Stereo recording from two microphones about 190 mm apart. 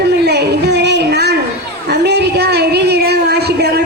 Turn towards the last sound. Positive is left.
turn(degrees=-60)  # may be behind; listen again after turning